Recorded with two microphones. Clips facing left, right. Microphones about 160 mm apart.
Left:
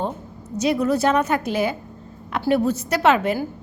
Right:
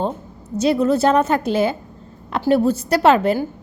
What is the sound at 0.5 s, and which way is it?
A woman's voice, 30° right (ahead or behind).